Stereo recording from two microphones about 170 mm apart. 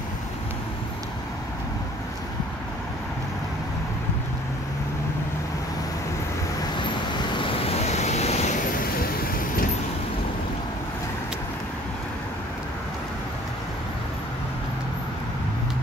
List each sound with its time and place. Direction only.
7.3 s vehicle: 35° left (ahead or behind)
9.0 s vehicle: 60° left (ahead or behind)